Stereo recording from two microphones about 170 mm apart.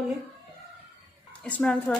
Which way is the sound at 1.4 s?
5° left (ahead or behind).